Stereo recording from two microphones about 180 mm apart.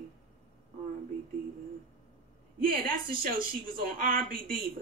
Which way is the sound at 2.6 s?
55° right (ahead or behind).